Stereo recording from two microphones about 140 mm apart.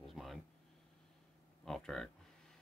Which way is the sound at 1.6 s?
5° left (ahead or behind).